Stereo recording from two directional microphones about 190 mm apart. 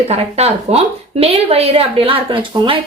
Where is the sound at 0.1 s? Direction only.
35° right (ahead or behind).